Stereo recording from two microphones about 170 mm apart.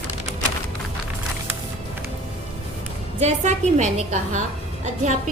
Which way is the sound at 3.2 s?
40° right (ahead or behind).